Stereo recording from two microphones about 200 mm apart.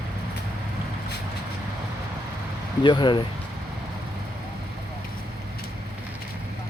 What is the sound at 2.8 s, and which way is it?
Speech, 25° left (ahead or behind).